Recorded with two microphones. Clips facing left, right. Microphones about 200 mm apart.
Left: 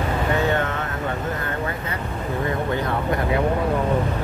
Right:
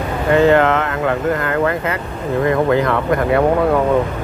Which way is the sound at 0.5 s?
90° right.